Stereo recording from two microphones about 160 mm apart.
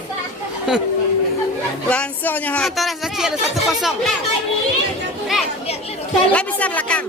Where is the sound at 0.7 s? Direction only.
5° right (ahead or behind).